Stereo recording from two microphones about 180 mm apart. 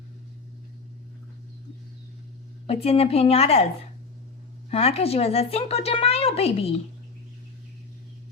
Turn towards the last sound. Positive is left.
turn(degrees=35)  # may be behind; listen again after turning